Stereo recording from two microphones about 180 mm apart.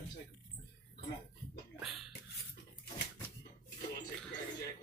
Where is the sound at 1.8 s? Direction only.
Centre (ahead or behind).